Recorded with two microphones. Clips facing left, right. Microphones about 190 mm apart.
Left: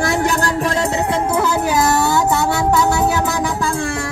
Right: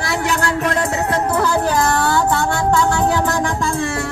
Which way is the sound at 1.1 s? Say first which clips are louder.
Even; 10° left (ahead or behind).